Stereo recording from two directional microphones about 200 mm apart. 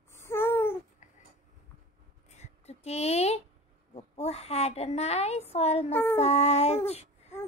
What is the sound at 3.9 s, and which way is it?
A woman's voice, 30° left (ahead or behind).